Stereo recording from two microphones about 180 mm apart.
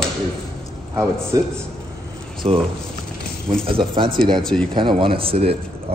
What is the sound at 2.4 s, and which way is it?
A man's voice, 35° right (ahead or behind).